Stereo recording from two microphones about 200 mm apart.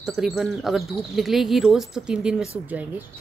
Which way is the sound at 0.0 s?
Centre (ahead or behind).